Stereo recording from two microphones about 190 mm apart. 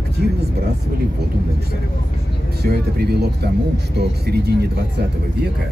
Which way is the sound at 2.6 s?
55° right (ahead or behind).